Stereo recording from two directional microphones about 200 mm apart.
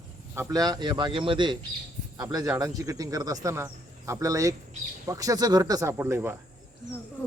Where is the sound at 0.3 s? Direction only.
15° right (ahead or behind).